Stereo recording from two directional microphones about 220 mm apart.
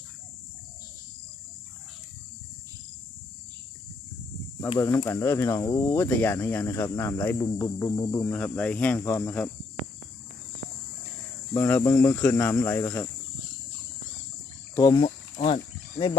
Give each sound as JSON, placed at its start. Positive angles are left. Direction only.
{"t": 4.7, "sound": "speech", "side_deg": 15}
{"t": 8.3, "sound": "speech", "side_deg": 5}
{"t": 11.5, "sound": "speech", "side_deg": 10}
{"t": 14.9, "sound": "speech", "side_deg": 25}